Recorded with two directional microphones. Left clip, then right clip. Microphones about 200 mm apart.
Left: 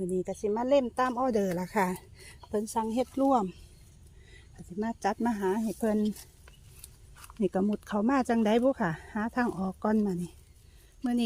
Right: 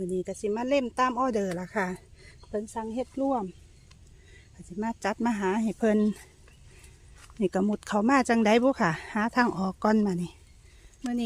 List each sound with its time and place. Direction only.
0.1 s speech: 5° right (ahead or behind); by 3.5 s 10° left (ahead or behind)
4.8 s speech: 10° right (ahead or behind)
7.3 s speech: 10° right (ahead or behind)